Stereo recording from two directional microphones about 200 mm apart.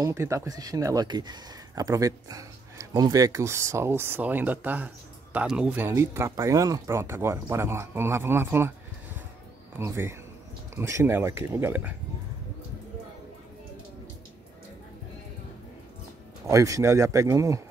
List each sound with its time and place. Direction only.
0.0 s speech: 15° right (ahead or behind)
16.4 s speech: 15° right (ahead or behind)